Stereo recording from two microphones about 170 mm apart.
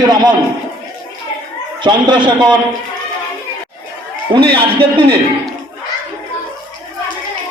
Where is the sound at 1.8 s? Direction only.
25° right (ahead or behind).